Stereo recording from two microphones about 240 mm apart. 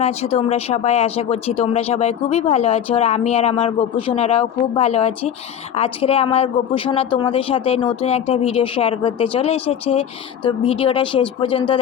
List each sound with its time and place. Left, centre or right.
0.0 s speech: left